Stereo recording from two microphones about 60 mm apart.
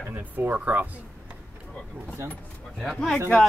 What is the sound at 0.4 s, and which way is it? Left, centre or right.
Speech, right.